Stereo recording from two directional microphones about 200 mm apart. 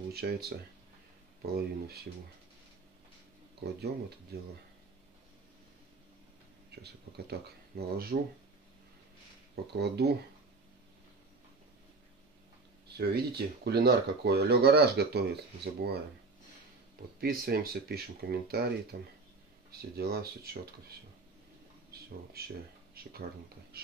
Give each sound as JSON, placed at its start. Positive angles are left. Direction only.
{"t": 0.1, "sound": "speech", "side_deg": -50}
{"t": 3.6, "sound": "speech", "side_deg": -50}
{"t": 6.7, "sound": "speech", "side_deg": -55}
{"t": 9.7, "sound": "speech", "side_deg": -55}
{"t": 12.9, "sound": "speech", "side_deg": -50}
{"t": 17.2, "sound": "speech", "side_deg": -50}
{"t": 21.9, "sound": "a sound", "side_deg": -50}
{"t": 22.4, "sound": "speech", "side_deg": -50}